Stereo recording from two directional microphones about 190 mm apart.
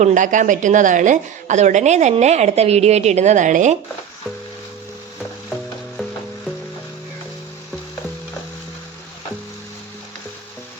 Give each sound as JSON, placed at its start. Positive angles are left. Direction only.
{"t": 0.0, "sound": "a woman's voice", "side_deg": -40}